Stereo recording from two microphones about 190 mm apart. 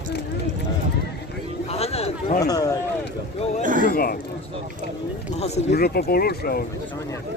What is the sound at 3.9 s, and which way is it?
Speech, 50° left (ahead or behind).